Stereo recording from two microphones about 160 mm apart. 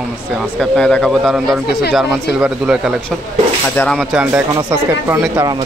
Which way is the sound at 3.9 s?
5° right (ahead or behind).